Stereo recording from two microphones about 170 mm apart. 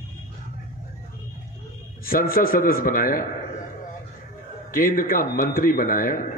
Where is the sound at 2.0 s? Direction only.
60° left (ahead or behind).